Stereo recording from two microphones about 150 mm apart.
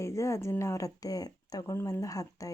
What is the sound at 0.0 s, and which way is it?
Speech, 20° left (ahead or behind).